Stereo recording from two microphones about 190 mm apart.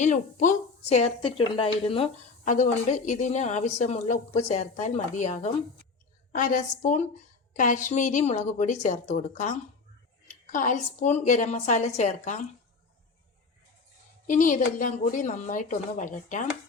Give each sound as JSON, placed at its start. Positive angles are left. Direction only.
{"t": 0.0, "sound": "a woman's voice", "side_deg": 40}
{"t": 14.3, "sound": "speech", "side_deg": 45}